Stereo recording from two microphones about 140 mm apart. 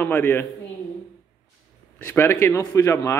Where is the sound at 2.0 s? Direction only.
15° left (ahead or behind).